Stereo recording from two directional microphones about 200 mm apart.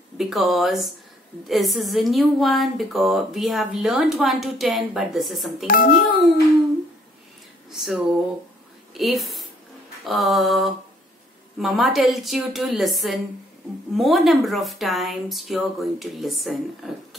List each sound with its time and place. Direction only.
0.2 s a woman's voice: centre (ahead or behind)
5.7 s a child's voice: 45° left (ahead or behind)
8.9 s a woman's voice: centre (ahead or behind)